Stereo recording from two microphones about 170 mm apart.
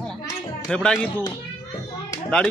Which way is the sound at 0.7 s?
5° left (ahead or behind).